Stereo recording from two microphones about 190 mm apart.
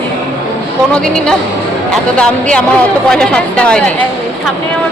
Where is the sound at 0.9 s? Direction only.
5° left (ahead or behind).